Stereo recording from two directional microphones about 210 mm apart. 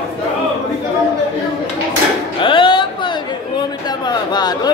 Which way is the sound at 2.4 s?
25° left (ahead or behind).